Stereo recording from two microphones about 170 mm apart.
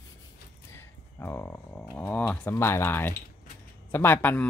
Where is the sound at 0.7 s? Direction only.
15° left (ahead or behind).